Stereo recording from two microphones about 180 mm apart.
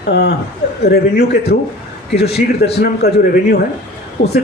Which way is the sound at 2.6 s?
65° left (ahead or behind).